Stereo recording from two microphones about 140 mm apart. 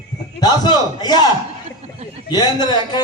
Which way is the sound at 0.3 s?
30° left (ahead or behind).